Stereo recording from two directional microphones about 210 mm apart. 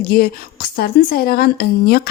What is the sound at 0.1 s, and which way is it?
Speech, 45° left (ahead or behind).